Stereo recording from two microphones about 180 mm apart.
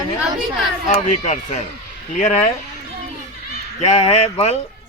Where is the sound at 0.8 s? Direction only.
40° left (ahead or behind).